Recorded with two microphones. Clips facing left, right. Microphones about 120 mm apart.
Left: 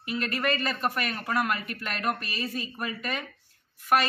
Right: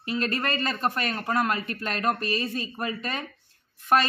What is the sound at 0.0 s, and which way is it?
Speech, 25° right (ahead or behind).